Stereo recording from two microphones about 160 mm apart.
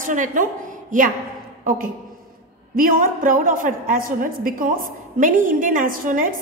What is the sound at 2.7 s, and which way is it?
A woman's voice, 60° right (ahead or behind).